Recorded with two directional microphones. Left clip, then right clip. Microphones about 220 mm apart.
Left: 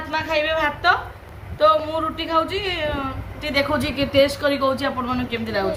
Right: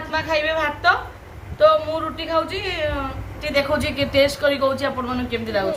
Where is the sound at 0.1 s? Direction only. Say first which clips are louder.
Even; centre (ahead or behind).